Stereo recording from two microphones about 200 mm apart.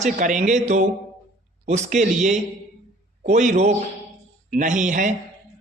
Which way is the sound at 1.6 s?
35° right (ahead or behind).